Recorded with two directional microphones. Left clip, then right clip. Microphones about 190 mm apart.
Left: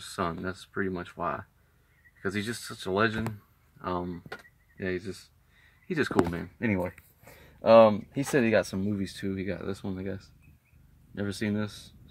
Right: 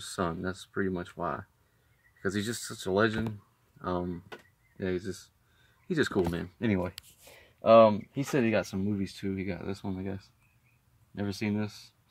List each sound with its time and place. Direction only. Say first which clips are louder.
0.0 s speech: left 1 dB; 10° right (ahead or behind)
2.2 s speech: even; 10° right (ahead or behind)
6.7 s speech: left 1 dB; centre (ahead or behind)
7.6 s speech: left 1 dB; 10° left (ahead or behind)